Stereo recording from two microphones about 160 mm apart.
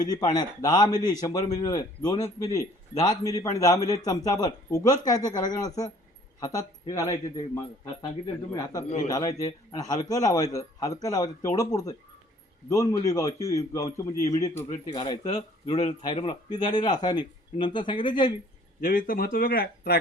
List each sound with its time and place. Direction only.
0.0 s a man's voice: 25° left (ahead or behind)
14.9 s a man's voice: 25° left (ahead or behind)
18.8 s speech: 60° left (ahead or behind)